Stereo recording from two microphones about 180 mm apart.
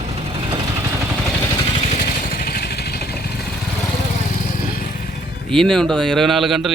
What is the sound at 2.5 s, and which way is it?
Vehicle, 60° left (ahead or behind).